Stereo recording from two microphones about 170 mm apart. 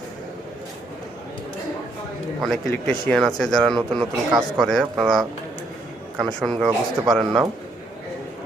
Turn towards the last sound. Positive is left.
turn(degrees=0)  # may be behind; listen again after turning